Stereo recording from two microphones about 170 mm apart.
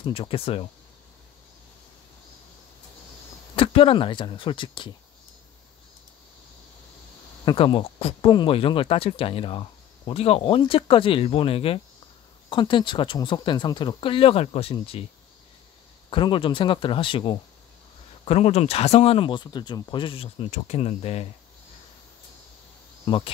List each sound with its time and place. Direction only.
0.0 s speech: 30° left (ahead or behind)
3.5 s speech: 30° left (ahead or behind)
7.4 s speech: 30° left (ahead or behind)
16.1 s speech: 30° left (ahead or behind)
23.0 s speech: 30° left (ahead or behind)